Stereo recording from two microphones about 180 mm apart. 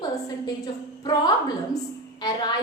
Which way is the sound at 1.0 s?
20° left (ahead or behind).